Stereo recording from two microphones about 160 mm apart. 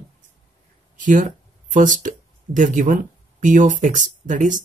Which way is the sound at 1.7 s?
55° right (ahead or behind).